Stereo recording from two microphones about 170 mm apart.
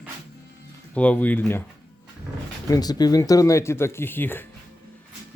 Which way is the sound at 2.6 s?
20° left (ahead or behind).